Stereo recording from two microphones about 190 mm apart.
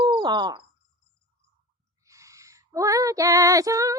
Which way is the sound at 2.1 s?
15° right (ahead or behind).